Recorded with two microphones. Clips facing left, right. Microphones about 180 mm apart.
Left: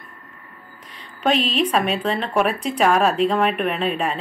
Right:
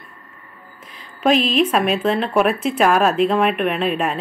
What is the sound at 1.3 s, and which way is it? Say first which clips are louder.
Speech: right 4 dB; 35° left (ahead or behind).